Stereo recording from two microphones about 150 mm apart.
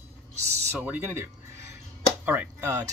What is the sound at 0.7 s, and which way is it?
Speech, 10° right (ahead or behind).